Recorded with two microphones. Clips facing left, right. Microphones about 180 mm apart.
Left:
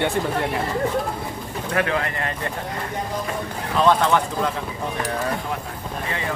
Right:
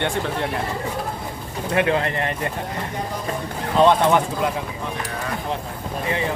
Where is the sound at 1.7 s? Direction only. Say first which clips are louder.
Right 3 dB; 20° right (ahead or behind).